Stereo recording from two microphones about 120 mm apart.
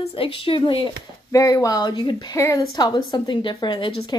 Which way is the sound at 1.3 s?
25° left (ahead or behind).